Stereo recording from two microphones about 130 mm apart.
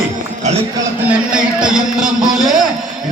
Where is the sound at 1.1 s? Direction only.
5° right (ahead or behind).